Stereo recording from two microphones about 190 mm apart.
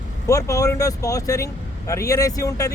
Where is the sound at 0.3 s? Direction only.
15° left (ahead or behind).